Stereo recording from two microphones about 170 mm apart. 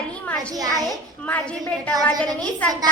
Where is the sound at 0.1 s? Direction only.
5° left (ahead or behind).